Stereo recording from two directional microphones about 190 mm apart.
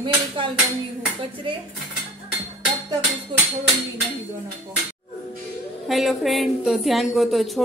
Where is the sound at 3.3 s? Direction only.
25° right (ahead or behind).